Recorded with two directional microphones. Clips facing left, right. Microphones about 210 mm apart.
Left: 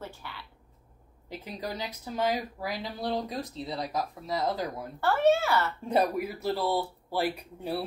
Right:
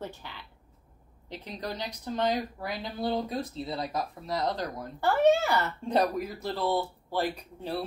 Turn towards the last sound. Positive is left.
turn(degrees=10)  # may be behind; listen again after turning